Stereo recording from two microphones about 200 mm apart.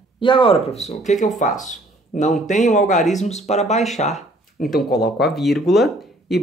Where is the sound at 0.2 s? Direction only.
25° left (ahead or behind).